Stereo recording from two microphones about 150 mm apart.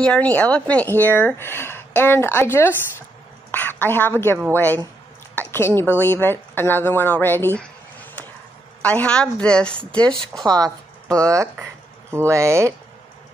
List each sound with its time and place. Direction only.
0.0 s a woman's voice: 10° left (ahead or behind)
10.4 s speech: 25° right (ahead or behind)